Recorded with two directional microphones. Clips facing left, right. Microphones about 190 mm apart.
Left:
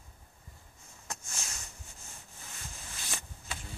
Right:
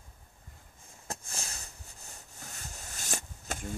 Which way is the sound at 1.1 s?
35° right (ahead or behind).